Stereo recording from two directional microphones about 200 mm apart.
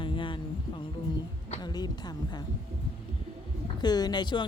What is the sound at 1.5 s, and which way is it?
Speech, 20° left (ahead or behind).